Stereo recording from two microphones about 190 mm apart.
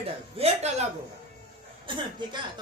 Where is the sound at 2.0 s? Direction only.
25° right (ahead or behind).